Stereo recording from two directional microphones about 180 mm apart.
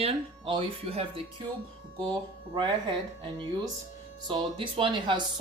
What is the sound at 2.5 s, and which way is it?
Speech, 25° right (ahead or behind).